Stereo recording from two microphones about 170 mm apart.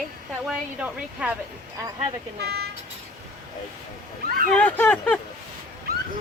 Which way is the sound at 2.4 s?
70° right (ahead or behind).